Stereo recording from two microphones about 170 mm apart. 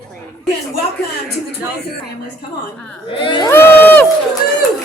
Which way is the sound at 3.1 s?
30° left (ahead or behind).